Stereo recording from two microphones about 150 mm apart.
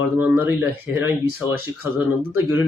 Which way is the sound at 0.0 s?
15° right (ahead or behind).